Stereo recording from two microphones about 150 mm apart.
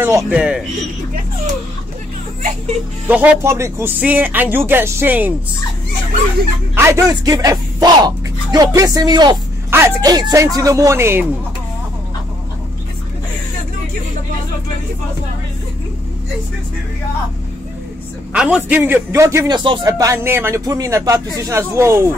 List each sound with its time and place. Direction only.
0.0 s speech: 10° right (ahead or behind)
3.1 s speech: 10° right (ahead or behind)
6.7 s speech: 20° right (ahead or behind)
18.3 s speech: 5° right (ahead or behind)